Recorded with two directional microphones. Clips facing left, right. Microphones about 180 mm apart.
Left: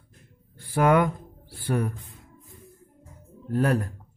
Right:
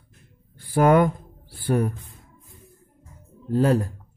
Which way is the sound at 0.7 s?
35° right (ahead or behind).